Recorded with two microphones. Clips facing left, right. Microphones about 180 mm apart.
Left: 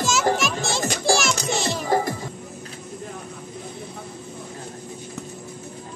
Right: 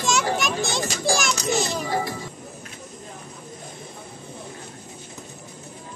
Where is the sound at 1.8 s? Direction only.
45° left (ahead or behind).